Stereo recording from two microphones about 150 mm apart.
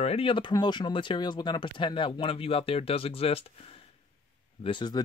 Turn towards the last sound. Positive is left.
turn(degrees=30)  # may be behind; listen again after turning